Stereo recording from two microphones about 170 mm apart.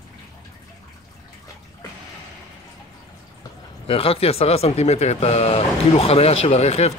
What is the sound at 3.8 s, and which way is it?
Speech, 35° left (ahead or behind).